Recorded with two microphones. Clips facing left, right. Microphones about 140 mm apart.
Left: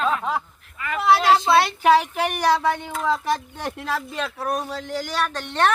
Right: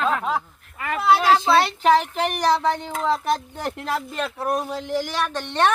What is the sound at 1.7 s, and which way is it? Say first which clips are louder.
Speech: left 1 dB; 5° left (ahead or behind).